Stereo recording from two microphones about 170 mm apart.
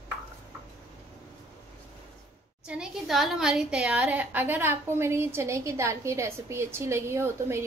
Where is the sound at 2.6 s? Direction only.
5° right (ahead or behind).